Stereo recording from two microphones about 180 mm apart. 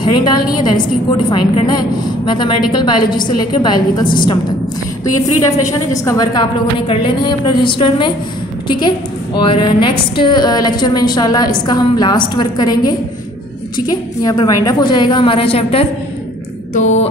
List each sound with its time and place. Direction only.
0.0 s a woman's voice: 25° left (ahead or behind)
5.4 s a woman's voice: 20° left (ahead or behind); by 15.9 s 35° left (ahead or behind)
16.7 s a sound: 40° left (ahead or behind)